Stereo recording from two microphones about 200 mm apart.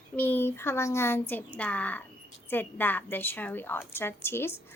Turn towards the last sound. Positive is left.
turn(degrees=10)  # may be behind; listen again after turning